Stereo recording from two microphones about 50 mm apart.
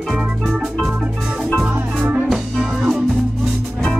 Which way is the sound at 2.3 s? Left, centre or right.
Centre.